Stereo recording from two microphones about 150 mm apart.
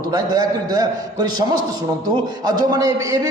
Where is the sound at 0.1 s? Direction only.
25° right (ahead or behind).